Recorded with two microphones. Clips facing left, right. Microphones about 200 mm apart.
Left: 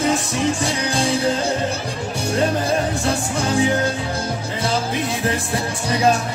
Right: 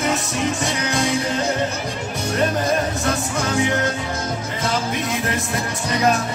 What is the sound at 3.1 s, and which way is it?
Music, 30° left (ahead or behind).